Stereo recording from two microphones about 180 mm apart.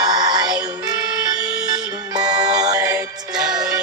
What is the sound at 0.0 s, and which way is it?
Music, 20° right (ahead or behind).